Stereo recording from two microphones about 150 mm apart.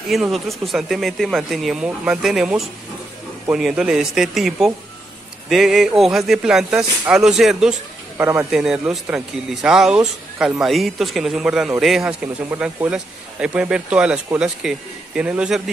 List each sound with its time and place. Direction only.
0.1 s speech: centre (ahead or behind)
8.2 s speech: 15° right (ahead or behind)
8.5 s speech: 5° right (ahead or behind)